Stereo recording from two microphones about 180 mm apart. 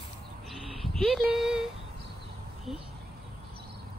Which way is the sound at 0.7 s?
Centre (ahead or behind).